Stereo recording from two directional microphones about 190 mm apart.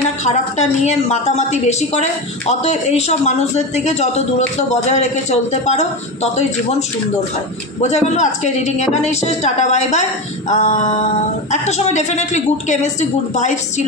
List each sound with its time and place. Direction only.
0.2 s a woman's voice: 35° left (ahead or behind)
7.8 s a woman's voice: 35° left (ahead or behind)